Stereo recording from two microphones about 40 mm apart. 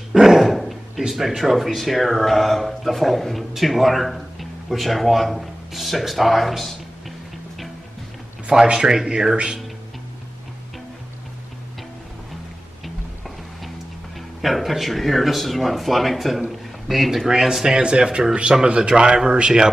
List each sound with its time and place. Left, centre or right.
0.1 s dog: centre
0.4 s dog: centre
1.0 s speech: centre
8.6 s a man's voice: centre
14.4 s speech: centre
16.4 s a sound: centre
17.3 s a man's voice: centre